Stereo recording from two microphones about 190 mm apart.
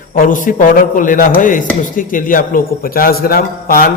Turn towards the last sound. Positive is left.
turn(degrees=50)  # may be behind; listen again after turning